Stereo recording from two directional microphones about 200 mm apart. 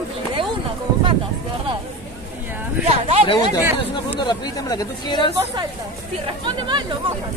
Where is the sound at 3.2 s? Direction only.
20° left (ahead or behind).